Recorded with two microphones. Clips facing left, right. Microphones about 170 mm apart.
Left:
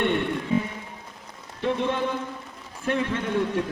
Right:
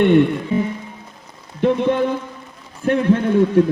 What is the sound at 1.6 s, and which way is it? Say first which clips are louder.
A man's voice: right 8 dB; 55° right (ahead or behind).